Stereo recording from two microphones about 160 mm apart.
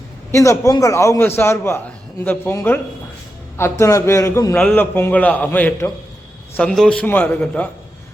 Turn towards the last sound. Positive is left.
turn(degrees=10)  # may be behind; listen again after turning